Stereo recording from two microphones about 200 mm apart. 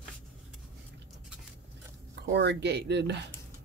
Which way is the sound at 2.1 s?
60° right (ahead or behind).